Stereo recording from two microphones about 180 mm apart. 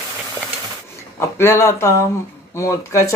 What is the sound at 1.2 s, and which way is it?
Speech, 15° left (ahead or behind).